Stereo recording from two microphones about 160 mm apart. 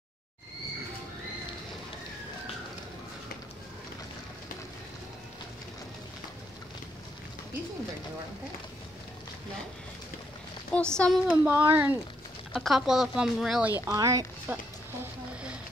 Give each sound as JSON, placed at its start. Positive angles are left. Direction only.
{"t": 10.7, "sound": "speech", "side_deg": 5}
{"t": 11.2, "sound": "speech", "side_deg": -10}
{"t": 12.5, "sound": "speech", "side_deg": 0}
{"t": 13.8, "sound": "speech", "side_deg": -20}